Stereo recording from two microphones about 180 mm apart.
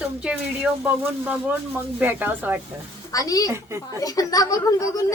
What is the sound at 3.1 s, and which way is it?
A woman's voice, 20° left (ahead or behind).